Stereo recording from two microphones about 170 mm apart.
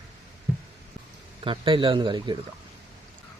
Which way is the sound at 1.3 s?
30° right (ahead or behind).